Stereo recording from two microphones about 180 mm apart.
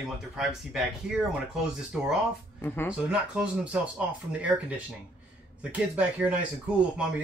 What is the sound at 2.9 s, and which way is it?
Speech, 5° right (ahead or behind).